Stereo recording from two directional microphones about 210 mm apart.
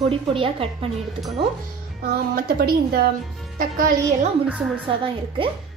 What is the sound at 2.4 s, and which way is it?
A woman's voice, 45° right (ahead or behind).